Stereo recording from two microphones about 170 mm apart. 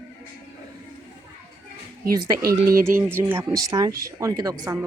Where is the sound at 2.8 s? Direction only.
15° right (ahead or behind).